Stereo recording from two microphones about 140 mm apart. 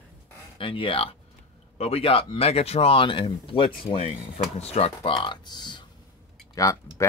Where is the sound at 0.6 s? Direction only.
40° left (ahead or behind).